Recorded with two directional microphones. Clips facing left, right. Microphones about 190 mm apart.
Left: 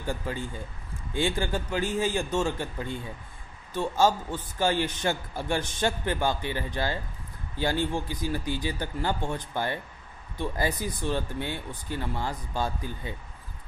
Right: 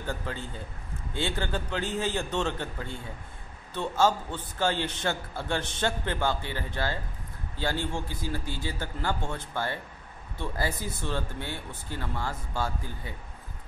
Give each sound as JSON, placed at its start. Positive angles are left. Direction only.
{"t": 0.0, "sound": "speech", "side_deg": 10}